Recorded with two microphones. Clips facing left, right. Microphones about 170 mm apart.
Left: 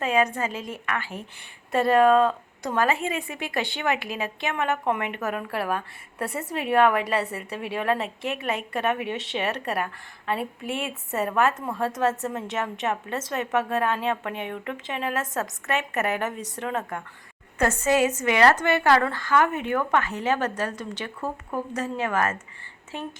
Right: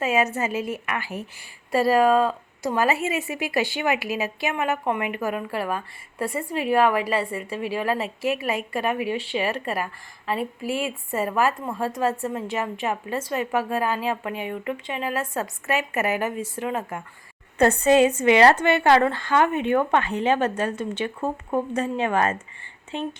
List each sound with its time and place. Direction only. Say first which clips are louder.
0.0 s a woman's voice: right 1 dB; 5° right (ahead or behind)
17.6 s a woman's voice: right 5 dB; 35° right (ahead or behind)